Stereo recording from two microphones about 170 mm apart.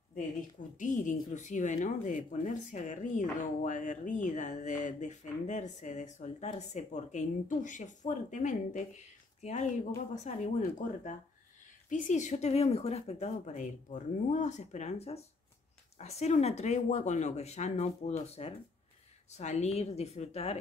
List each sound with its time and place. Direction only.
0.7 s speech: 50° left (ahead or behind)
11.9 s a woman's voice: 45° left (ahead or behind)